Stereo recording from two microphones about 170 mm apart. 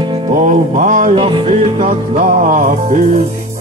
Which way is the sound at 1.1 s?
30° right (ahead or behind).